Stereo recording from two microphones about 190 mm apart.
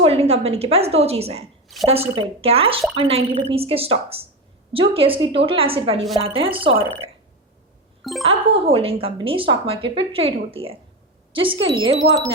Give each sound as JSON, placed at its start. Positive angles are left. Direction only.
{"t": 0.0, "sound": "a woman's voice", "side_deg": -35}
{"t": 1.6, "sound": "a sound", "side_deg": 0}
{"t": 1.9, "sound": "a woman's voice", "side_deg": -30}
{"t": 8.3, "sound": "a woman's voice", "side_deg": -30}